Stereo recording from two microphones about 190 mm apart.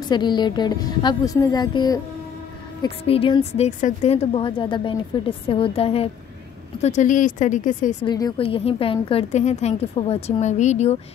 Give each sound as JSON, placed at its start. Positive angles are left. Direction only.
{"t": 0.1, "sound": "a woman's voice", "side_deg": 25}
{"t": 6.8, "sound": "a woman's voice", "side_deg": 40}
{"t": 8.0, "sound": "a woman's voice", "side_deg": 20}